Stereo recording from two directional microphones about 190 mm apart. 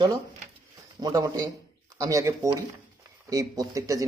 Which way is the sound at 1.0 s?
20° right (ahead or behind).